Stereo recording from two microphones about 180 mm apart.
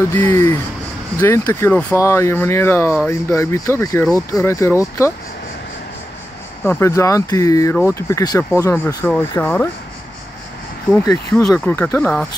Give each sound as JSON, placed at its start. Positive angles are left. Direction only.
{"t": 0.1, "sound": "speech", "side_deg": 15}
{"t": 6.6, "sound": "speech", "side_deg": 15}
{"t": 11.5, "sound": "speech", "side_deg": 15}